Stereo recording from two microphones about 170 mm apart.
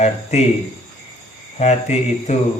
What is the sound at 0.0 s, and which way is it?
Speech, 40° left (ahead or behind).